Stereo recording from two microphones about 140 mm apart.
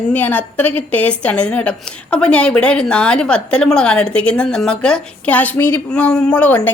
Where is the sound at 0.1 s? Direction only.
10° left (ahead or behind).